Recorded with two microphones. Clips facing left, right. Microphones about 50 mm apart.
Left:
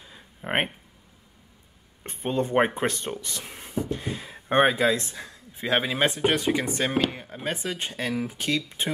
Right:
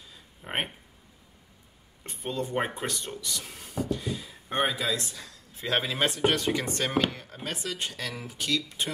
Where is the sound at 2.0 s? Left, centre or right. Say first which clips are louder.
Left 6 dB; left.